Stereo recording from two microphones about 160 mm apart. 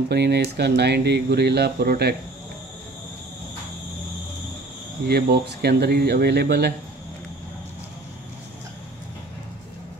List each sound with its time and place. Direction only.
0.1 s speech: 90° right
5.0 s speech: 85° right